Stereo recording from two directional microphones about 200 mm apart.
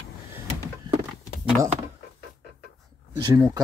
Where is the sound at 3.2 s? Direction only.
20° right (ahead or behind).